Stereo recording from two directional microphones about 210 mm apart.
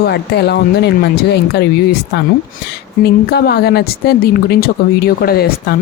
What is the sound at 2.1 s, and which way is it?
Speech, 55° left (ahead or behind).